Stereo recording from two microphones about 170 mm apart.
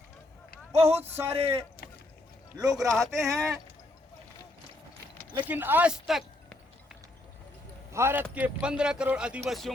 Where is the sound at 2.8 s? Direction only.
Centre (ahead or behind).